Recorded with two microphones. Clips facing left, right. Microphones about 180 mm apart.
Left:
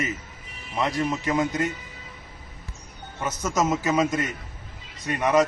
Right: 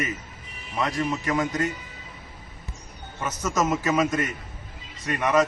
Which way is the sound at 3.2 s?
20° left (ahead or behind).